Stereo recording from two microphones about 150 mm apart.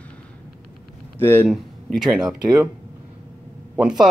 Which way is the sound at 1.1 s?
15° left (ahead or behind).